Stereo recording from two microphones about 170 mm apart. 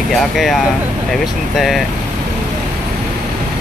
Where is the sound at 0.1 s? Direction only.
Centre (ahead or behind).